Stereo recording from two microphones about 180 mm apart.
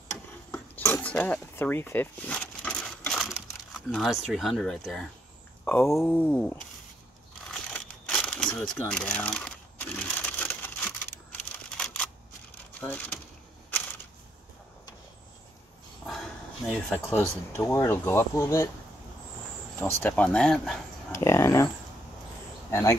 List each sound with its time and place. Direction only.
0.1 s cutlery: 10° left (ahead or behind)
5.7 s speech: 15° left (ahead or behind)
7.4 s crushing: 5° left (ahead or behind)
8.5 s crumpling: 5° left (ahead or behind)
11.7 s camera: 5° left (ahead or behind)
12.8 s speech: 10° left (ahead or behind)
16.1 s a sound: centre (ahead or behind)
17.6 s speech: 15° left (ahead or behind)
20.0 s speech: 10° left (ahead or behind)
21.1 s speech: 15° left (ahead or behind)
22.7 s speech: 15° left (ahead or behind)